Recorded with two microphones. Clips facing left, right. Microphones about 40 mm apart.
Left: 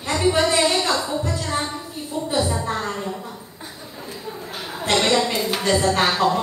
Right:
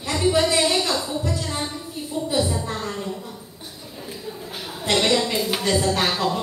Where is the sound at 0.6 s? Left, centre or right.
Left.